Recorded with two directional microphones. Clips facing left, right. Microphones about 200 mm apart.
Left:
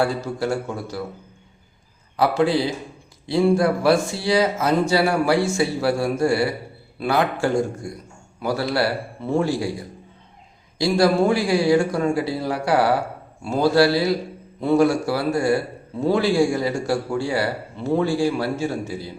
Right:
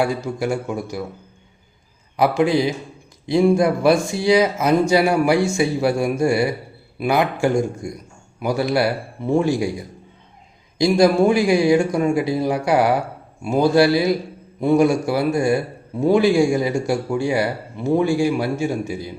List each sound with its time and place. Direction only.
0.0 s speech: 15° right (ahead or behind)
2.1 s speech: 15° right (ahead or behind)
10.8 s speech: 15° right (ahead or behind)